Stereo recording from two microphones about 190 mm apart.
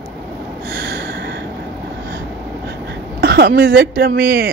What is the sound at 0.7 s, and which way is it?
Snort, 55° right (ahead or behind).